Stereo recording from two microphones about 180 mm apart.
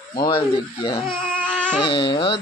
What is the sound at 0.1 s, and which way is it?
Speech, 25° left (ahead or behind).